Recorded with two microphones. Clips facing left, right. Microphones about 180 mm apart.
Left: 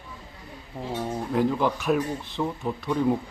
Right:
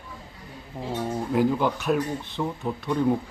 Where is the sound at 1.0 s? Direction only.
5° right (ahead or behind).